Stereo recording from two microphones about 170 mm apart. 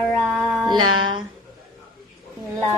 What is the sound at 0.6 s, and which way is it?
Speech, 25° right (ahead or behind).